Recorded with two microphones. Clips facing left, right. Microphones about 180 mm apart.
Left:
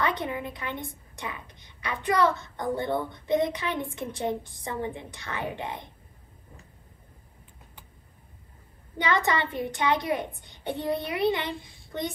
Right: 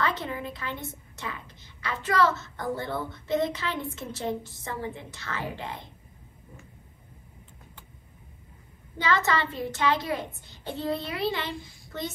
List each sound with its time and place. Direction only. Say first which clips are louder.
0.2 s a woman's voice: left 2 dB; 20° left (ahead or behind)
8.9 s a woman's voice: even; 20° left (ahead or behind)